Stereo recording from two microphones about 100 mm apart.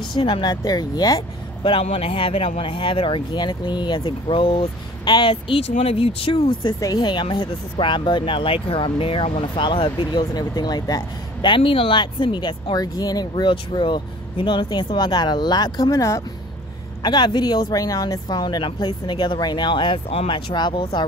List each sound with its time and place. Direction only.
0.1 s speech: 55° left (ahead or behind); by 1.2 s 40° left (ahead or behind)
1.6 s speech: 70° left (ahead or behind)
6.8 s speech: 40° left (ahead or behind)
11.5 s speech: 65° left (ahead or behind); by 13.3 s 40° left (ahead or behind)
13.4 s speech: 55° left (ahead or behind); by 16.2 s 30° left (ahead or behind)
17.0 s speech: 50° left (ahead or behind)